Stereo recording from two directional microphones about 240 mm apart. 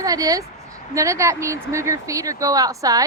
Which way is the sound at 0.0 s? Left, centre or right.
Centre.